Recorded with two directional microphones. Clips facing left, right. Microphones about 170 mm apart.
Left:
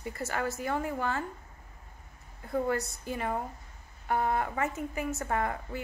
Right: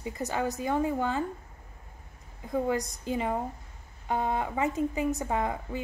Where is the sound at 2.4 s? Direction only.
15° right (ahead or behind).